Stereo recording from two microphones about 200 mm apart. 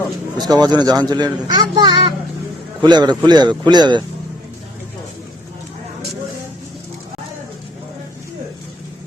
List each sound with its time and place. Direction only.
0.3 s a child's voice: 20° right (ahead or behind)